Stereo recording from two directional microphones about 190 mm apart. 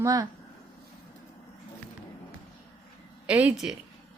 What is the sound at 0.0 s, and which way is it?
Speech, 20° right (ahead or behind).